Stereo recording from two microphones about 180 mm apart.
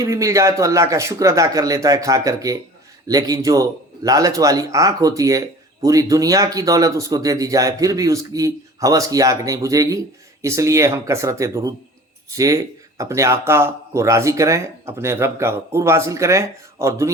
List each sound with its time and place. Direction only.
0.0 s speech: 15° right (ahead or behind)